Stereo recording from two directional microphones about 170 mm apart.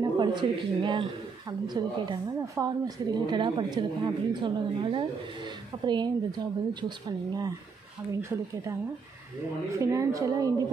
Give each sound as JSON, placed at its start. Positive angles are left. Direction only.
{"t": 0.0, "sound": "a man's voice", "side_deg": -25}